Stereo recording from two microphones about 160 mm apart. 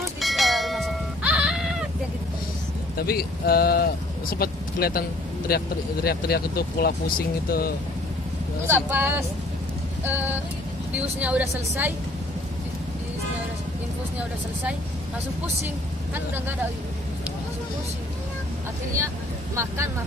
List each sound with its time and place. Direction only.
0.2 s a sound: centre (ahead or behind)
3.0 s speech: 75° left (ahead or behind)
8.6 s speech: 15° right (ahead or behind)
19.5 s speech: 20° right (ahead or behind)